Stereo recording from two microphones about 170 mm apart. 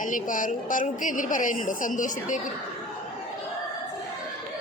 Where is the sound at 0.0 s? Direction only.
50° left (ahead or behind).